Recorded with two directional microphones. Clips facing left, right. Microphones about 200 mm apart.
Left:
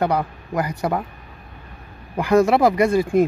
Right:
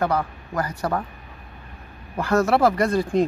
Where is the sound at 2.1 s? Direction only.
15° left (ahead or behind).